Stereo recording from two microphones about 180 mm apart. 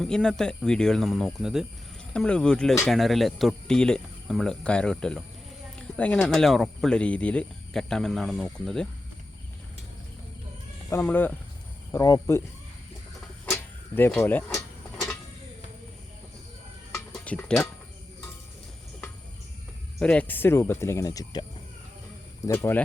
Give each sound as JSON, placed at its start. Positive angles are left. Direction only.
{"t": 0.0, "sound": "speech", "side_deg": 5}
{"t": 10.8, "sound": "speech", "side_deg": 10}
{"t": 11.9, "sound": "speech", "side_deg": 20}
{"t": 13.4, "sound": "a sound", "side_deg": 10}
{"t": 14.2, "sound": "speech", "side_deg": 10}
{"t": 17.1, "sound": "music", "side_deg": 5}
{"t": 20.0, "sound": "speech", "side_deg": 5}
{"t": 22.4, "sound": "speech", "side_deg": 15}